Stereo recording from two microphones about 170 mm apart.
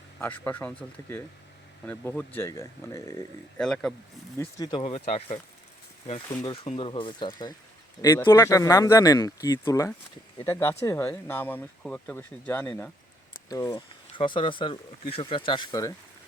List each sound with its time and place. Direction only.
0.2 s speech: 10° left (ahead or behind)
1.9 s speech: 10° left (ahead or behind)
3.6 s speech: 5° left (ahead or behind)
4.4 s speech: 20° left (ahead or behind)
4.8 s speech: 40° left (ahead or behind)
6.4 s speech: 30° left (ahead or behind)